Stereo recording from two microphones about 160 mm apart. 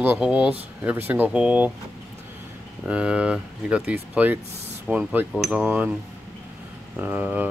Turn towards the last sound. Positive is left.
turn(degrees=-10)  # may be behind; listen again after turning